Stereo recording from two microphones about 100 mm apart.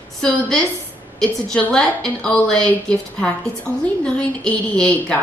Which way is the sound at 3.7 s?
30° right (ahead or behind).